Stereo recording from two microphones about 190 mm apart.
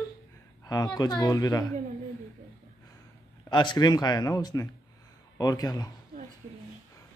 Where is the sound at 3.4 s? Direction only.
25° left (ahead or behind).